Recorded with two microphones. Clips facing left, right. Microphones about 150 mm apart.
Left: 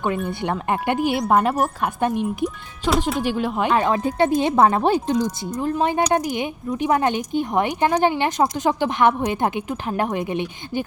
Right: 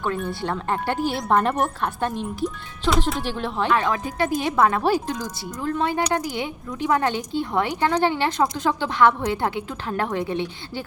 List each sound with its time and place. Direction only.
0.3 s speech: 20° left (ahead or behind)
3.9 s speech: 25° left (ahead or behind)